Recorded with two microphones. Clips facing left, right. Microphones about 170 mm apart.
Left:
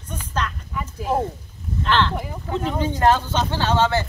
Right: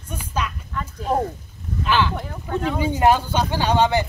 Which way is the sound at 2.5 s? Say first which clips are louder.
Right 1 dB; 10° right (ahead or behind).